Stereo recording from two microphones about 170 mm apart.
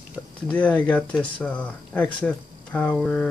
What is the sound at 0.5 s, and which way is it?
Speech, 10° left (ahead or behind).